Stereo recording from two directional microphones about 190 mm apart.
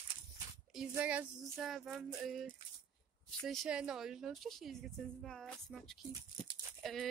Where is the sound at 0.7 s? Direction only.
5° right (ahead or behind).